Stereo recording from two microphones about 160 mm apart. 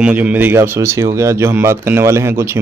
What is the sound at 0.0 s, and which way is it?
Speech, 10° right (ahead or behind).